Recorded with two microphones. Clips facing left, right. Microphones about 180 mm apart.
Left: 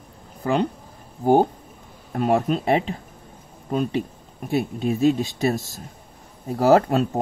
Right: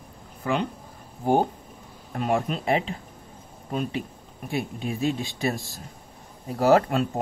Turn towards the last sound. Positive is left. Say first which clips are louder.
# left 3 dB
turn(degrees=40)  # may be behind; listen again after turning